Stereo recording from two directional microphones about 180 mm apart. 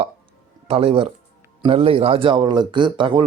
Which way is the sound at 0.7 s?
30° right (ahead or behind).